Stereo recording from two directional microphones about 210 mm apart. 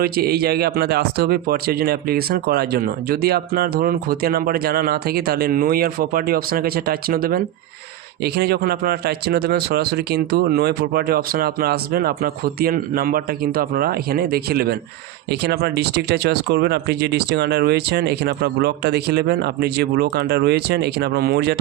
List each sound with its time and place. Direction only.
0.0 s speech: 45° right (ahead or behind)